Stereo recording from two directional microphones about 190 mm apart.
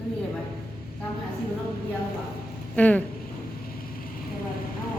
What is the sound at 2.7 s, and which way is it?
Speech, 5° left (ahead or behind).